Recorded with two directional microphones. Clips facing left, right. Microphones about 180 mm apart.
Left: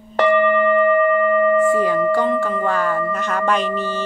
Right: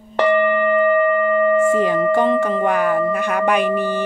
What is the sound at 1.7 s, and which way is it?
Singing bowl, 20° right (ahead or behind).